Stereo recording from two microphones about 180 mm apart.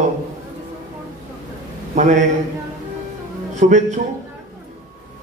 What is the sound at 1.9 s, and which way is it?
Speech, 45° right (ahead or behind).